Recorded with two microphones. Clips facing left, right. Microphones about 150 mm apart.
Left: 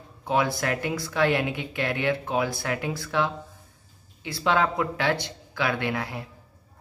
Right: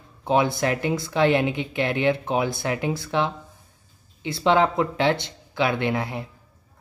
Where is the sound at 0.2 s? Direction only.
25° right (ahead or behind).